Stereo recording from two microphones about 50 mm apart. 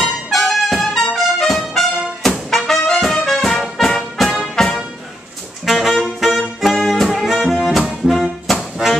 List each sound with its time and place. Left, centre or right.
0.0 s trumpet: centre
5.7 s saxophone: centre
8.5 s saxophone: centre